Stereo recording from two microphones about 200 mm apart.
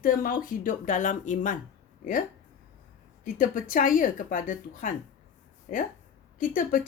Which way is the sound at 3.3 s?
40° left (ahead or behind).